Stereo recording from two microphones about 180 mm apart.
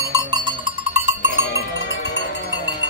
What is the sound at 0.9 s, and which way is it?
Cowbell, 40° right (ahead or behind).